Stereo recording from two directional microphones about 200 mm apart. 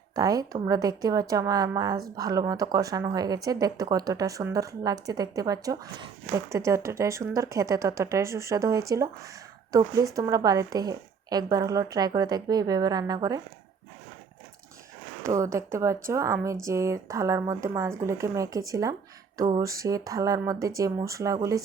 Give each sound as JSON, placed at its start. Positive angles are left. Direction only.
{"t": 0.2, "sound": "speech", "side_deg": -20}
{"t": 15.2, "sound": "speech", "side_deg": -15}